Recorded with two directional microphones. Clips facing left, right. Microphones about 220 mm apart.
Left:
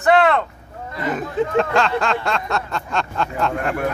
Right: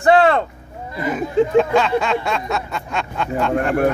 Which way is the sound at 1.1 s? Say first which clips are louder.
Right 4 dB; centre (ahead or behind).